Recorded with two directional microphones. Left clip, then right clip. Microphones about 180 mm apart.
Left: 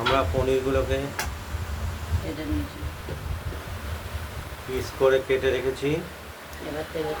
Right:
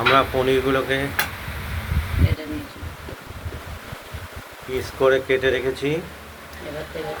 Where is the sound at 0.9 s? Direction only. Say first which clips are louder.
Right 5 dB; 10° right (ahead or behind).